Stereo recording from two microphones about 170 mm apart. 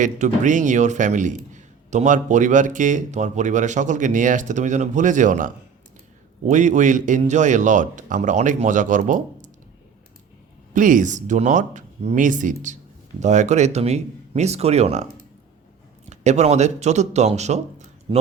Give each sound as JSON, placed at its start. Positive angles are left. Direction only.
{"t": 0.0, "sound": "a man's voice", "side_deg": -50}
{"t": 10.8, "sound": "a man's voice", "side_deg": -50}
{"t": 16.0, "sound": "a man's voice", "side_deg": -40}